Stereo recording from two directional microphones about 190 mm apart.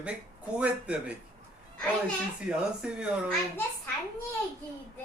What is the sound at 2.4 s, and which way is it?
Speech, 5° right (ahead or behind).